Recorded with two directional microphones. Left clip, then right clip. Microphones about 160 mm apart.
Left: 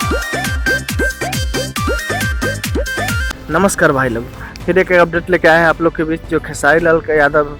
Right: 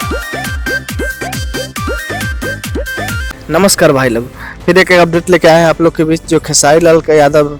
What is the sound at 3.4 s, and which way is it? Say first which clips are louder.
Speech: right 4 dB; 25° right (ahead or behind).